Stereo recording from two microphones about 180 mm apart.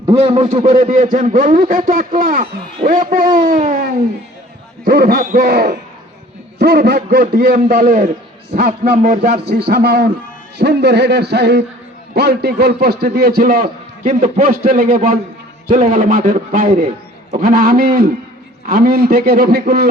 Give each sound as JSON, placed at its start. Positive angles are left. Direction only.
{"t": 0.1, "sound": "a man's voice", "side_deg": -30}